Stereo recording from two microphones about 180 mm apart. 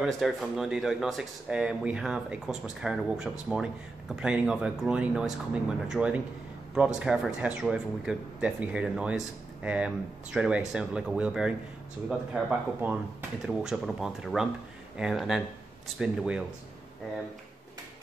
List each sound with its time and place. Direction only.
0.0 s speech: centre (ahead or behind)